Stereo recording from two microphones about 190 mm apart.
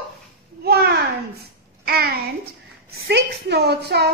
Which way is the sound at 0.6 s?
55° right (ahead or behind).